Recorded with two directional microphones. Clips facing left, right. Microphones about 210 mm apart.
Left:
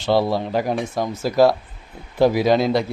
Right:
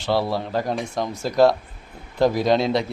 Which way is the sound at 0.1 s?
20° left (ahead or behind).